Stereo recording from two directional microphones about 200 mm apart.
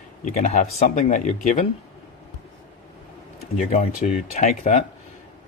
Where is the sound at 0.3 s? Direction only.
35° left (ahead or behind).